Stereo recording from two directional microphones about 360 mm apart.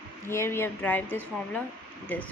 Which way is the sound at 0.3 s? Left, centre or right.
Centre.